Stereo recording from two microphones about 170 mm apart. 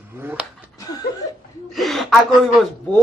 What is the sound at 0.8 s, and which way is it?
Chuckle, 20° left (ahead or behind).